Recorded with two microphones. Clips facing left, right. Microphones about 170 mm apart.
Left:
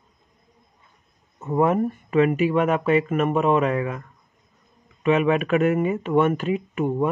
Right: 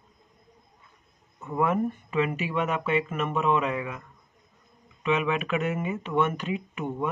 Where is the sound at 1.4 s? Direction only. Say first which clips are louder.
Left 6 dB; 40° left (ahead or behind).